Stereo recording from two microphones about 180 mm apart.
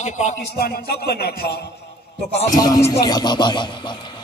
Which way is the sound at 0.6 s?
60° left (ahead or behind).